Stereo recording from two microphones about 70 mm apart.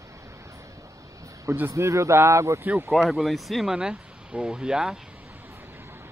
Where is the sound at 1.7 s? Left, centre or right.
Right.